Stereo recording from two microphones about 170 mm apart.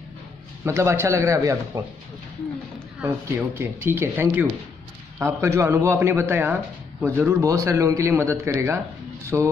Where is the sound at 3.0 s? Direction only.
15° right (ahead or behind).